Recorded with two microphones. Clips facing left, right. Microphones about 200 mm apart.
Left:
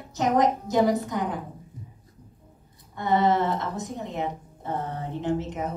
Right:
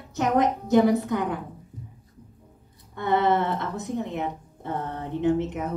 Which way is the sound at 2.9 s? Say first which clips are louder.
Even; 60° right (ahead or behind).